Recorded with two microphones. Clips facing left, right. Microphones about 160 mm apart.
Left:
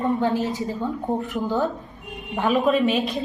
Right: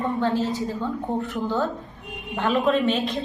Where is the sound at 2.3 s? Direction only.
5° left (ahead or behind).